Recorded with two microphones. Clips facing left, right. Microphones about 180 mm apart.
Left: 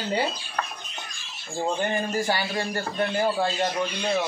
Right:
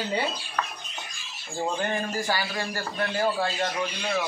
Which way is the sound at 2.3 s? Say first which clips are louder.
Left 2 dB; 25° left (ahead or behind).